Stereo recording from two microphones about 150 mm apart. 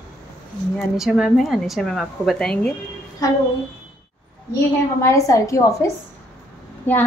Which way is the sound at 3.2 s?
20° left (ahead or behind).